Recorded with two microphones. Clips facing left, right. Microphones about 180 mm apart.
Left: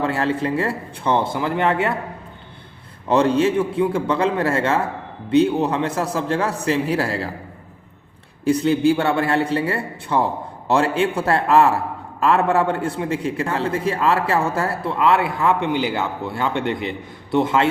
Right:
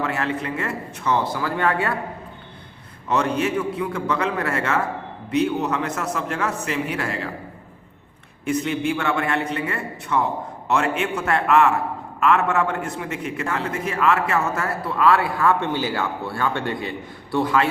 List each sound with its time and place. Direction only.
0.0 s speech: 30° left (ahead or behind)
3.1 s a man's voice: 30° left (ahead or behind)
8.4 s a man's voice: 35° left (ahead or behind)